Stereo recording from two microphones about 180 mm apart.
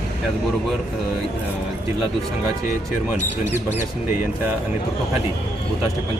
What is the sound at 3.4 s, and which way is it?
Speech, 10° right (ahead or behind).